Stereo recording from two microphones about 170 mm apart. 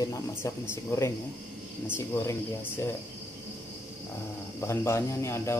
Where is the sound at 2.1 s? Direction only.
15° left (ahead or behind).